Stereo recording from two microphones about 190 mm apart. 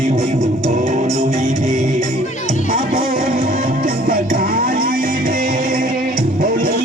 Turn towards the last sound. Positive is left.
turn(degrees=-45)  # may be behind; listen again after turning